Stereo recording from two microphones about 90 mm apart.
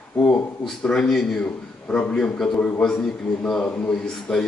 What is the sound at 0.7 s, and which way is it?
A man's voice, 5° left (ahead or behind).